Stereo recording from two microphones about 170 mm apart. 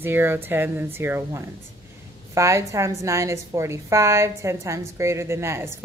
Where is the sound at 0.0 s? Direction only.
15° right (ahead or behind).